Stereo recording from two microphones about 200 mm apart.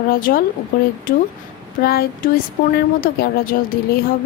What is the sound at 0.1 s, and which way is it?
A woman's voice, 45° left (ahead or behind).